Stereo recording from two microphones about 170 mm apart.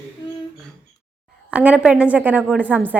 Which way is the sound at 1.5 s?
10° right (ahead or behind).